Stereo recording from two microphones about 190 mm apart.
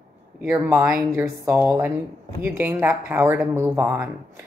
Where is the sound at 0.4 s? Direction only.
5° right (ahead or behind).